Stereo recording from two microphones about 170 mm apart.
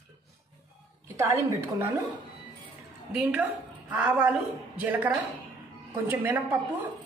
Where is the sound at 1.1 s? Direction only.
15° right (ahead or behind).